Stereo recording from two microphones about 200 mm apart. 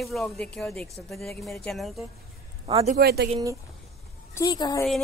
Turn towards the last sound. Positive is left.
turn(degrees=20)  # may be behind; listen again after turning